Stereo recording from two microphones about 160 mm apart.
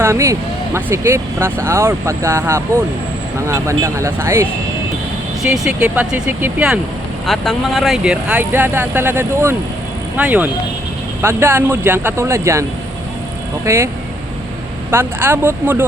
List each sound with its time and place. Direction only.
0.0 s speech: 15° right (ahead or behind)
5.4 s speech: 5° right (ahead or behind)
7.3 s speech: centre (ahead or behind); by 12.6 s 20° right (ahead or behind)
13.7 s speech: 15° right (ahead or behind)